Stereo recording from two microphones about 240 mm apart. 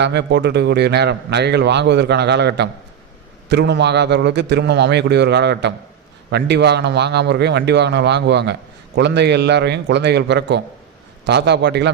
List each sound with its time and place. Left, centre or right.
0.0 s a man's voice: right